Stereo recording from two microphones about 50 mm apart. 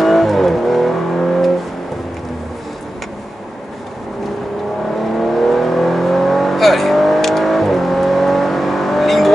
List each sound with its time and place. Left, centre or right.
0.0 s car: centre
4.9 s vehicle: centre